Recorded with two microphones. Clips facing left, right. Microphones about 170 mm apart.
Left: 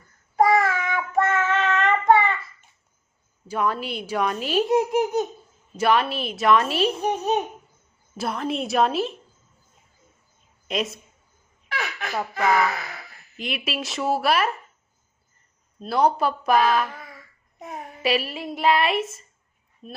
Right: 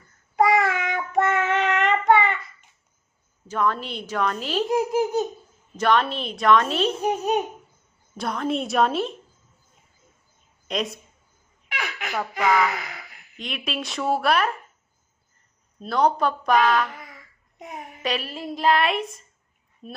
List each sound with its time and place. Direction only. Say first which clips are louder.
0.5 s child singing: left 1 dB; 20° right (ahead or behind)
3.4 s speech: even; 10° left (ahead or behind)
5.7 s a child's voice: even; 10° left (ahead or behind)
10.7 s a child's voice: left 1 dB; centre (ahead or behind)
12.4 s speech: even; 15° right (ahead or behind)
13.4 s a child's voice: left 1 dB; 5° left (ahead or behind)
15.9 s speech: even; 10° left (ahead or behind)
18.0 s a child's voice: left 4 dB; 5° left (ahead or behind)